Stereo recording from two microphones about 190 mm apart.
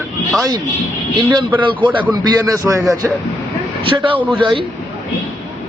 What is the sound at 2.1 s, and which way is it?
Speech, 20° right (ahead or behind).